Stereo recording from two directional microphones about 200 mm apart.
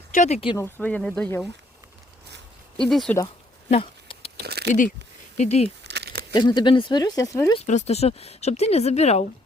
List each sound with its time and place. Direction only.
0.1 s speech: 35° left (ahead or behind)
0.5 s speech: 10° left (ahead or behind)
2.8 s speech: centre (ahead or behind)
3.7 s patter: 30° left (ahead or behind)
4.4 s a sound: 55° right (ahead or behind)
4.7 s speech: 40° left (ahead or behind)
5.8 s crumpling: 55° right (ahead or behind)
6.3 s speech: 20° left (ahead or behind)
7.6 s speech: 35° left (ahead or behind)